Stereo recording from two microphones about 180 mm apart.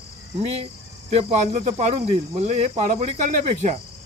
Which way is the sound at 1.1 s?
35° right (ahead or behind).